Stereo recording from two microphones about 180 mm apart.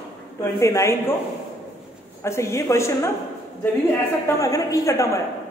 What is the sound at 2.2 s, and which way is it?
Speech, 15° left (ahead or behind).